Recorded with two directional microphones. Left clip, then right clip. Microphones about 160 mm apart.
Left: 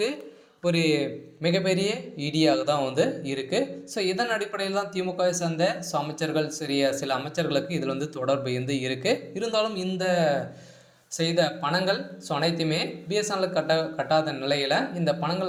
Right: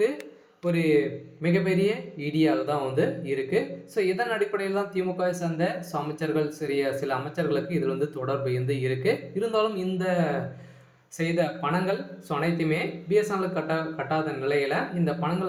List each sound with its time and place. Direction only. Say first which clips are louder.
0.6 s speech: right 1 dB; 25° left (ahead or behind)